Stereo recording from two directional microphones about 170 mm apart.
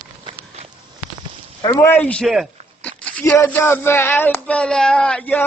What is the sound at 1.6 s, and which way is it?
Speech, 20° left (ahead or behind).